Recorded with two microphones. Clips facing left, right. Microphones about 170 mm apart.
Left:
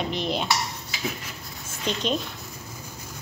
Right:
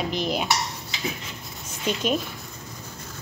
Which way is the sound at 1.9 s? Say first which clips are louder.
Right 2 dB; 5° right (ahead or behind).